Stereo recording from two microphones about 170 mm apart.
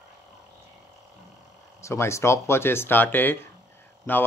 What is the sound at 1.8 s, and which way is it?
Speech, 15° left (ahead or behind).